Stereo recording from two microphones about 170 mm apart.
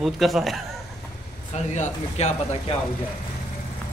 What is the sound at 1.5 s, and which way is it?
Speech, 40° left (ahead or behind).